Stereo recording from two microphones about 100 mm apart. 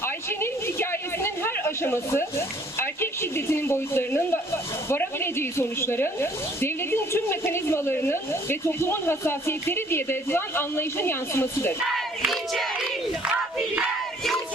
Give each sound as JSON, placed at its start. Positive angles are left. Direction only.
{"t": 0.0, "sound": "a sound", "side_deg": 25}
{"t": 2.7, "sound": "speech", "side_deg": 25}
{"t": 11.9, "sound": "battle cry", "side_deg": 0}